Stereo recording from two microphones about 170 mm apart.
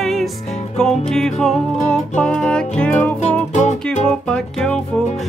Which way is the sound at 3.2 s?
45° left (ahead or behind).